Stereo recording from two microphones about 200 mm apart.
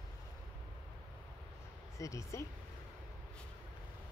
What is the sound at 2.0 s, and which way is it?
Speech, 15° left (ahead or behind).